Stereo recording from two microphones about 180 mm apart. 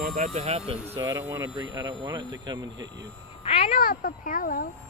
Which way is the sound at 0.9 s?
20° right (ahead or behind).